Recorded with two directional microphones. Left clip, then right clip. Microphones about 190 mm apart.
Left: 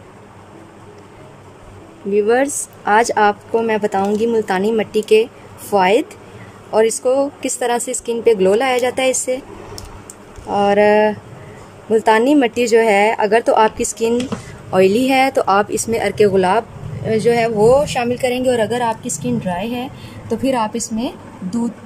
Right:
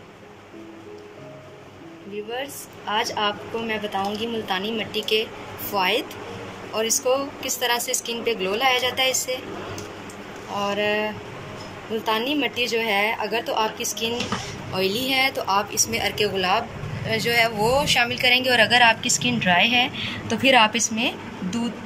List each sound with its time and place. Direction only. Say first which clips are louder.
2.9 s speech: left 11 dB; 80° left
10.5 s a woman's voice: left 11 dB; 65° left (ahead or behind); by 21.5 s 30° left (ahead or behind)